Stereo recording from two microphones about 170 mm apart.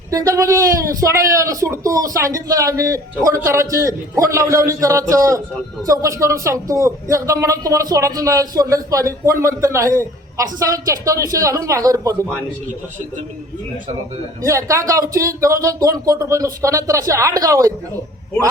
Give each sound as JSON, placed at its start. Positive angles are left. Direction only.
{"t": 0.1, "sound": "speech", "side_deg": -20}
{"t": 14.4, "sound": "speech", "side_deg": -20}